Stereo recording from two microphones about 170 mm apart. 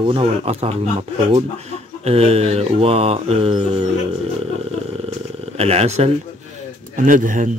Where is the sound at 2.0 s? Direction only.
35° right (ahead or behind).